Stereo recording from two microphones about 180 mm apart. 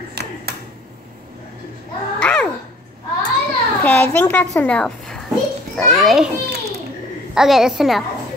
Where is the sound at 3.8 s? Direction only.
10° left (ahead or behind).